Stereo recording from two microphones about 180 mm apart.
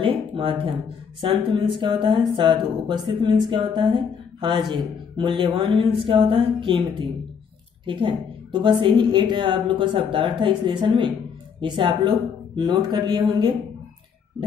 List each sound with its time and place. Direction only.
0.0 s a sound: 30° right (ahead or behind)
1.2 s a woman's voice: 30° right (ahead or behind)
7.8 s a woman's voice: 25° right (ahead or behind)